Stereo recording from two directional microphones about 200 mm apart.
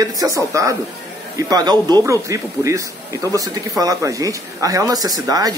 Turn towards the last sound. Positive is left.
turn(degrees=-20)  # may be behind; listen again after turning